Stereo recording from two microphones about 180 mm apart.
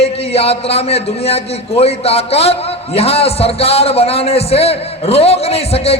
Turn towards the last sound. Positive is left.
turn(degrees=35)  # may be behind; listen again after turning